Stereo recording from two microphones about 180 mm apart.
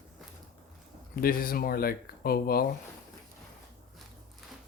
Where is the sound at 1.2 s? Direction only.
55° left (ahead or behind).